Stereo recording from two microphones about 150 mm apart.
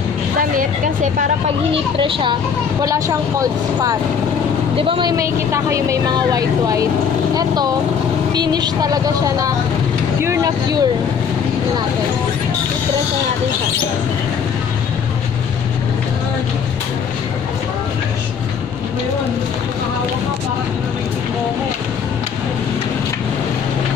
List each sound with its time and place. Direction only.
1.7 s a woman's voice: 35° right (ahead or behind)
2.8 s speech: 20° right (ahead or behind)
4.7 s a woman's voice: 35° right (ahead or behind)
5.1 s speech: 20° right (ahead or behind)
8.3 s speech: 30° right (ahead or behind)